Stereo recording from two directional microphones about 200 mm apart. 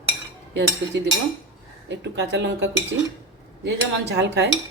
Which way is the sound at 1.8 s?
60° right (ahead or behind).